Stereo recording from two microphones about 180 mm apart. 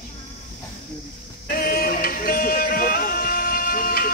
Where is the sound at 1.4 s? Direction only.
55° left (ahead or behind).